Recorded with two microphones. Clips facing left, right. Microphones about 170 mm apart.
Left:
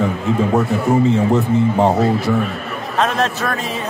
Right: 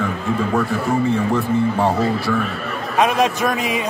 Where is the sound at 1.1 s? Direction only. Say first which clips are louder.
Left 3 dB; 20° left (ahead or behind).